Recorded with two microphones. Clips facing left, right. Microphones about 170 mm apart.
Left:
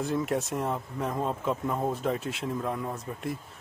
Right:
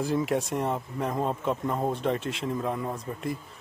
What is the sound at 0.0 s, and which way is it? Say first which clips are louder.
Speech: right 2 dB; centre (ahead or behind).